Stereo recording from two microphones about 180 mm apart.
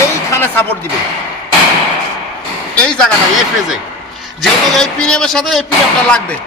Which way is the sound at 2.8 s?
5° left (ahead or behind).